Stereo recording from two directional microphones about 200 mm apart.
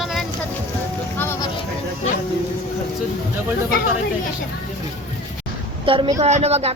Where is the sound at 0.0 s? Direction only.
Centre (ahead or behind).